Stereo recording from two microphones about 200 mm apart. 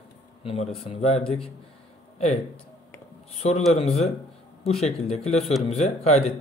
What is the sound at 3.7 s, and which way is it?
Speech, 30° left (ahead or behind).